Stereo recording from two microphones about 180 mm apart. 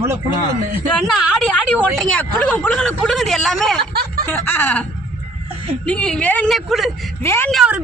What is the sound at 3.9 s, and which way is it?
Snicker, 60° right (ahead or behind).